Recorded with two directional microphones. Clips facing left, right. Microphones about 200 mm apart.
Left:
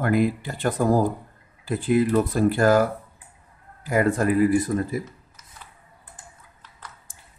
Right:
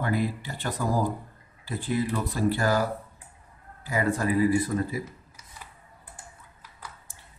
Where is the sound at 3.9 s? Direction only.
50° left (ahead or behind).